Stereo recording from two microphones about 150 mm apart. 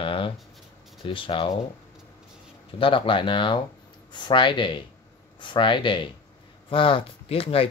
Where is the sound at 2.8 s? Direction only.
35° left (ahead or behind).